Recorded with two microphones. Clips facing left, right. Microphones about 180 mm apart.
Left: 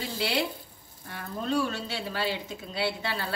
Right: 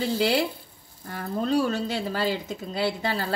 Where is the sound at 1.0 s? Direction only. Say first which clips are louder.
Right 5 dB; 40° right (ahead or behind).